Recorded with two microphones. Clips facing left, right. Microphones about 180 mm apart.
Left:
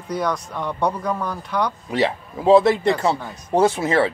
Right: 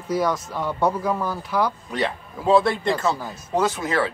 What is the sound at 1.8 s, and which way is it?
Speech, 25° left (ahead or behind).